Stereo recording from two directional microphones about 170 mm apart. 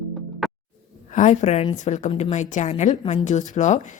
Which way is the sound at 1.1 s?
45° left (ahead or behind).